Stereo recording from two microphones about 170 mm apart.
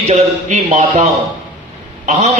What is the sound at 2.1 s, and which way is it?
Speech, 40° right (ahead or behind).